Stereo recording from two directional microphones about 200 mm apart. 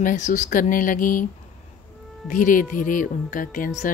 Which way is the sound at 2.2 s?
40° left (ahead or behind).